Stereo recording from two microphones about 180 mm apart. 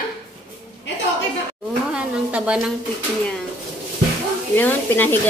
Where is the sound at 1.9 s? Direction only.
5° right (ahead or behind).